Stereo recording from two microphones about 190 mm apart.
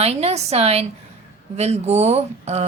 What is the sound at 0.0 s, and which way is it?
Speech, 35° right (ahead or behind).